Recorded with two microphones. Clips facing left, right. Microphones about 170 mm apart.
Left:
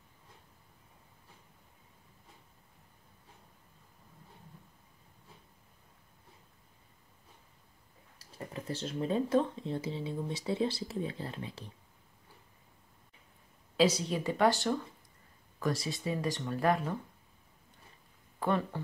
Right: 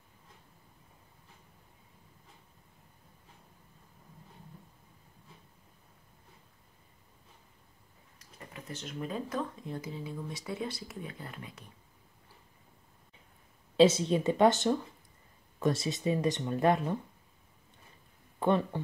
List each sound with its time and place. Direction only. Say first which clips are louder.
8.5 s speech: left 4 dB; 30° left (ahead or behind)
13.7 s speech: right 5 dB; 25° right (ahead or behind)
18.4 s speech: right 3 dB; 20° right (ahead or behind)